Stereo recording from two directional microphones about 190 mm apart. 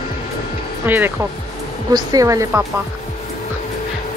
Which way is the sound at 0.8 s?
10° right (ahead or behind).